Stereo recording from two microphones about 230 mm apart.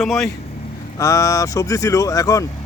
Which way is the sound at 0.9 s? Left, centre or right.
Centre.